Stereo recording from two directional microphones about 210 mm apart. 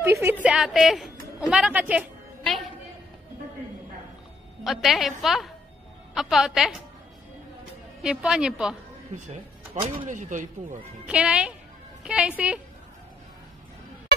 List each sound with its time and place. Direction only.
0.0 s a woman's voice: 10° right (ahead or behind)
4.6 s a woman's voice: centre (ahead or behind)
8.0 s a woman's voice: 5° right (ahead or behind)
9.3 s speech: 30° right (ahead or behind)
11.1 s a woman's voice: 5° right (ahead or behind)